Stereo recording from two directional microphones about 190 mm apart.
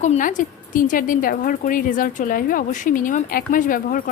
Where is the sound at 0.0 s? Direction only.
40° left (ahead or behind).